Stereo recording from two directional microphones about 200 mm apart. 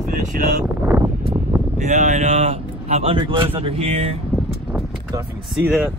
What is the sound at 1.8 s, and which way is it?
Speech, 35° right (ahead or behind).